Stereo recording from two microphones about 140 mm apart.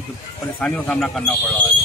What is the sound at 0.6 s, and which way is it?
Speech, 10° left (ahead or behind).